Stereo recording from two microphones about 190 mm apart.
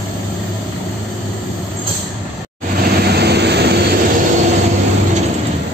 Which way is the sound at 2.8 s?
60° right (ahead or behind).